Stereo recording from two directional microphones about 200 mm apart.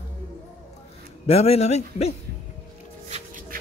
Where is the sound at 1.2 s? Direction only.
30° left (ahead or behind).